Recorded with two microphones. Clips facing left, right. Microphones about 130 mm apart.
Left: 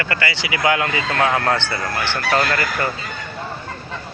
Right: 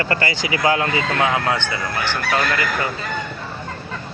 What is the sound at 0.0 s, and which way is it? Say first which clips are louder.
Speech: right 2 dB; 40° right (ahead or behind).